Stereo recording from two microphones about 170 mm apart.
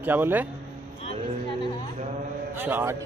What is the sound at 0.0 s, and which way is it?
Speech, 10° right (ahead or behind).